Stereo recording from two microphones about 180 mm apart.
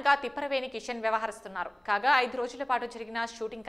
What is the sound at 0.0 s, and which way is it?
A woman's voice, centre (ahead or behind).